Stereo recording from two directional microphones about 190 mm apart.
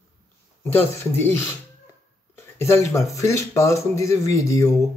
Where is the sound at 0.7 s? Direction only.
10° left (ahead or behind).